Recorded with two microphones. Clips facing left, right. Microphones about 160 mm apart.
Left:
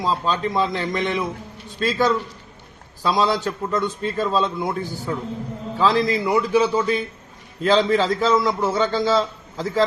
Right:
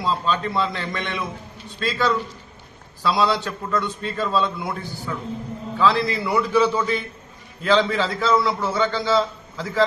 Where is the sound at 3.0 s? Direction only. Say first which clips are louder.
Left 1 dB; 45° left (ahead or behind).